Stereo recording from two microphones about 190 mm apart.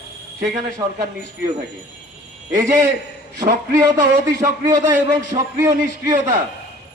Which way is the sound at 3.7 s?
15° right (ahead or behind).